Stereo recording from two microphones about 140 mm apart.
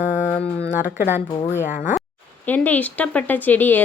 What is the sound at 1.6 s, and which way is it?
Speech, 65° left (ahead or behind).